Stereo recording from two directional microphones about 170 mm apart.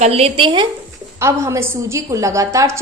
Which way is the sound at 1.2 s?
15° right (ahead or behind).